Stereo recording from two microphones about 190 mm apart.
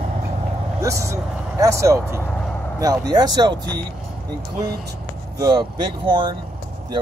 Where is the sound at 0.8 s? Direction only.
15° right (ahead or behind).